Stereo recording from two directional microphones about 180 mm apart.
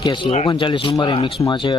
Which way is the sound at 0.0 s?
25° left (ahead or behind).